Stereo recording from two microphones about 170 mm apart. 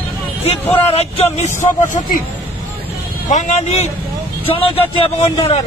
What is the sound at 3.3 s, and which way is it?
Speech, 40° left (ahead or behind).